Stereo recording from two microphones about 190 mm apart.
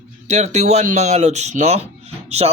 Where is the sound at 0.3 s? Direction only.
40° right (ahead or behind).